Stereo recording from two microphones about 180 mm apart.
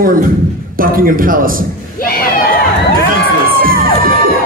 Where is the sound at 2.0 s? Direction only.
55° left (ahead or behind).